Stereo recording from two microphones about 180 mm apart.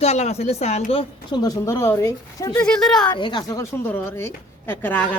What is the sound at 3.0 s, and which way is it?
A woman's voice, 25° left (ahead or behind).